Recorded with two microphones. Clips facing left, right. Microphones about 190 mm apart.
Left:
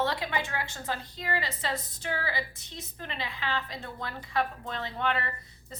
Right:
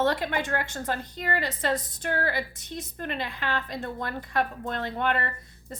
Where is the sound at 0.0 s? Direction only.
50° right (ahead or behind).